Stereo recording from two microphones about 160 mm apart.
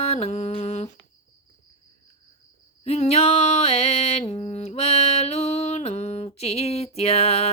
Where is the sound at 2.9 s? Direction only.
40° left (ahead or behind).